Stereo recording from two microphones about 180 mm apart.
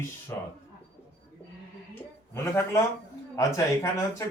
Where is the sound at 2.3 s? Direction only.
15° left (ahead or behind).